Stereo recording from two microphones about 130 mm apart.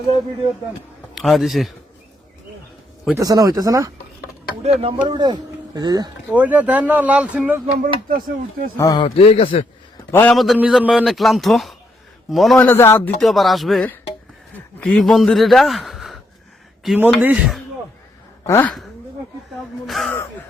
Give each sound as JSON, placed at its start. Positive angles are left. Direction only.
{"t": 1.1, "sound": "a man's voice", "side_deg": 0}
{"t": 3.2, "sound": "speech", "side_deg": -30}
{"t": 4.6, "sound": "speech", "side_deg": -50}
{"t": 5.0, "sound": "speech", "side_deg": -35}
{"t": 6.3, "sound": "speech", "side_deg": -10}
{"t": 7.8, "sound": "speech", "side_deg": -90}
{"t": 8.8, "sound": "a man's voice", "side_deg": 25}
{"t": 9.0, "sound": "a man's voice", "side_deg": 50}
{"t": 10.1, "sound": "a man's voice", "side_deg": 15}
{"t": 10.3, "sound": "speech", "side_deg": 0}
{"t": 12.5, "sound": "speech", "side_deg": 15}
{"t": 13.1, "sound": "speech", "side_deg": 0}
{"t": 18.4, "sound": "a man's voice", "side_deg": 20}
{"t": 20.0, "sound": "gasp", "side_deg": 0}